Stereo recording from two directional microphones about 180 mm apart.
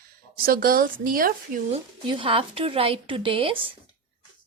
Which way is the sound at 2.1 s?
30° right (ahead or behind).